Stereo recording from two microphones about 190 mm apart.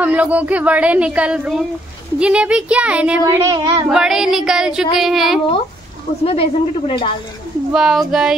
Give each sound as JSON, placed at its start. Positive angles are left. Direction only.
{"t": 0.0, "sound": "speech", "side_deg": -10}
{"t": 3.9, "sound": "music", "side_deg": -5}
{"t": 6.2, "sound": "speech", "side_deg": 30}
{"t": 7.7, "sound": "music", "side_deg": -5}